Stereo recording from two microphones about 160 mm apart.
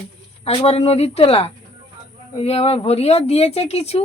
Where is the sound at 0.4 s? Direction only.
40° left (ahead or behind).